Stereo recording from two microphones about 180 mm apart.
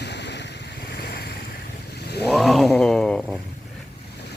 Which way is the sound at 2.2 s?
Centre (ahead or behind).